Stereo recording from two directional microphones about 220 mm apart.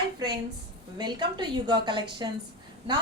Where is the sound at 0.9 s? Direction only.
20° right (ahead or behind).